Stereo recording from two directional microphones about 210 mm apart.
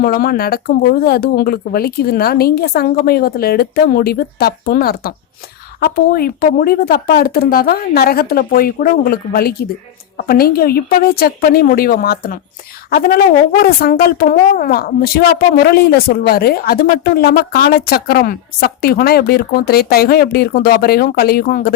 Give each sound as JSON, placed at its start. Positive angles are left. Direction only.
{"t": 0.0, "sound": "a woman's voice", "side_deg": 45}